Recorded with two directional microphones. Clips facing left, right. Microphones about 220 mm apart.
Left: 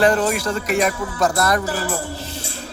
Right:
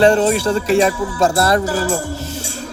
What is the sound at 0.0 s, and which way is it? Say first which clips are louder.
Speech: right 5 dB; 25° right (ahead or behind).